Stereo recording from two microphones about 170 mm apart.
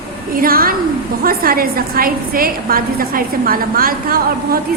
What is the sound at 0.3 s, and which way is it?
A woman's voice, 60° right (ahead or behind).